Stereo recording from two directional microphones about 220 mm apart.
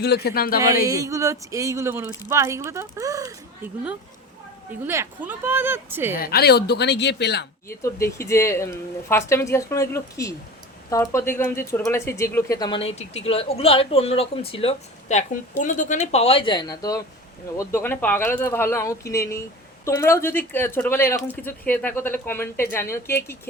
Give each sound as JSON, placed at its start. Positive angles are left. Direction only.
{"t": 0.0, "sound": "a woman's voice", "side_deg": 45}
{"t": 0.9, "sound": "speech", "side_deg": -15}
{"t": 4.8, "sound": "speech", "side_deg": -10}
{"t": 6.1, "sound": "a woman's voice", "side_deg": 45}
{"t": 7.7, "sound": "speech", "side_deg": 10}